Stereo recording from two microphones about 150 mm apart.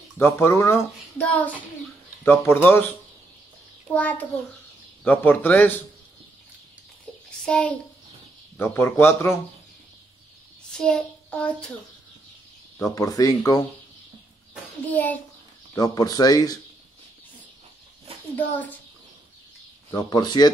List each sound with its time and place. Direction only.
0.2 s speech: 15° left (ahead or behind)
3.9 s speech: 10° left (ahead or behind)
7.2 s a child's voice: 5° left (ahead or behind)
10.7 s a child's voice: 5° left (ahead or behind)
12.7 s speech: 20° left (ahead or behind)
14.9 s speech: 10° left (ahead or behind)
15.7 s speech: 25° left (ahead or behind)
18.3 s speech: 10° left (ahead or behind)
19.9 s speech: 25° left (ahead or behind)